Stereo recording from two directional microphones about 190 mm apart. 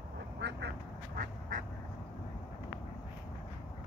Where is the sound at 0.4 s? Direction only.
65° right (ahead or behind).